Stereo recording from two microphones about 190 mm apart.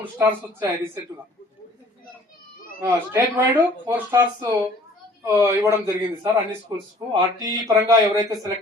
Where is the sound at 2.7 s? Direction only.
10° right (ahead or behind).